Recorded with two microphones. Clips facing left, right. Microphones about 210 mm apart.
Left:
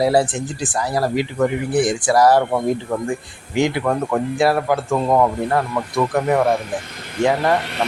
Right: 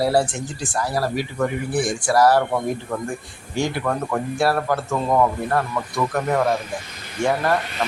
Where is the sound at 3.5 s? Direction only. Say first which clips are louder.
Left 4 dB; 15° left (ahead or behind).